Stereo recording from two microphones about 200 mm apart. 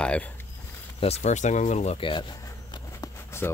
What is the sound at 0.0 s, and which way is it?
Speech, 5° left (ahead or behind).